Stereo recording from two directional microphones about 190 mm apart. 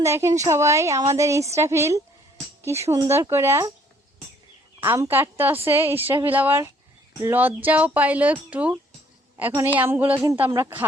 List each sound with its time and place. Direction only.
0.0 s a woman's voice: 15° right (ahead or behind)
4.8 s a woman's voice: 10° right (ahead or behind)
9.7 s a woman's voice: 10° right (ahead or behind)